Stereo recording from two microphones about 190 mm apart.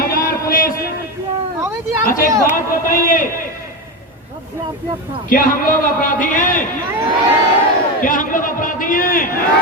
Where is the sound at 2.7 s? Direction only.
45° left (ahead or behind).